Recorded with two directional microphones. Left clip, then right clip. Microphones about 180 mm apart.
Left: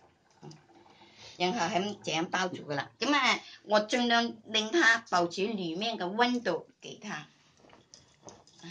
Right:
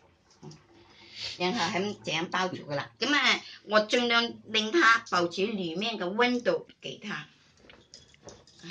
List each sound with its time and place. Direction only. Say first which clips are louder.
1.4 s speech: even; 35° left (ahead or behind)
2.3 s speech: right 2 dB; 50° left (ahead or behind)